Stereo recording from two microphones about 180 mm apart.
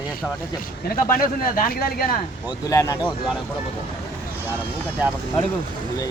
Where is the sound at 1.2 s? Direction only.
55° left (ahead or behind).